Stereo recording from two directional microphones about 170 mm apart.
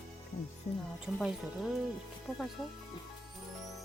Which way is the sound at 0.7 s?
40° left (ahead or behind).